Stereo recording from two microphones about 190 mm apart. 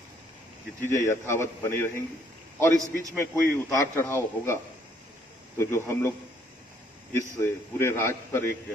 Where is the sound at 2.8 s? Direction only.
20° right (ahead or behind).